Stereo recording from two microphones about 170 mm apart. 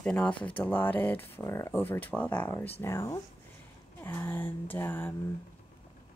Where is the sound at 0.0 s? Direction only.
5° left (ahead or behind).